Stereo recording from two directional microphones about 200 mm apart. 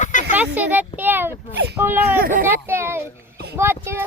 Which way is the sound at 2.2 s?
45° right (ahead or behind).